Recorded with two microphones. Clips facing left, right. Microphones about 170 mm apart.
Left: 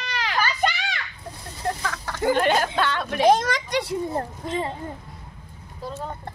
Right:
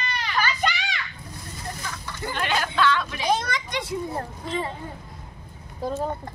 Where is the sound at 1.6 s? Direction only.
90° left.